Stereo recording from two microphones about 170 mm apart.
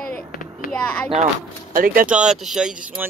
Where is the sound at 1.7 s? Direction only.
55° right (ahead or behind).